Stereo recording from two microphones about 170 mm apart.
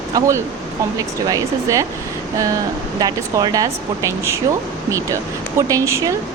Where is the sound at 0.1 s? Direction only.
15° right (ahead or behind).